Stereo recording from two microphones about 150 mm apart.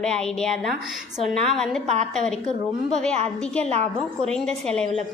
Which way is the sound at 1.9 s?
45° right (ahead or behind).